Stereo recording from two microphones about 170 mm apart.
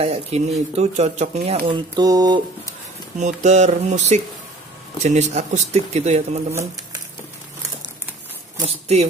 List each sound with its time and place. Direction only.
0.0 s speech: 40° right (ahead or behind)
1.7 s speech: 25° right (ahead or behind)
3.2 s a sound: 45° right (ahead or behind)
5.0 s speech: 40° right (ahead or behind)
8.5 s speech: 40° right (ahead or behind)